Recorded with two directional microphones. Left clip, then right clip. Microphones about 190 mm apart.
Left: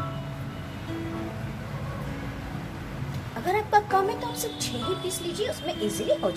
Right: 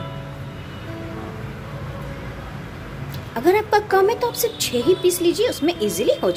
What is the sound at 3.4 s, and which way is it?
Speech, 55° right (ahead or behind).